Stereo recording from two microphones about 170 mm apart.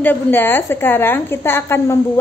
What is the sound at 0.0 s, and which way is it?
A woman's voice, 10° left (ahead or behind).